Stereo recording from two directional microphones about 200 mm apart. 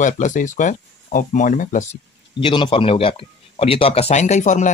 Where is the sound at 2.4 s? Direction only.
25° left (ahead or behind).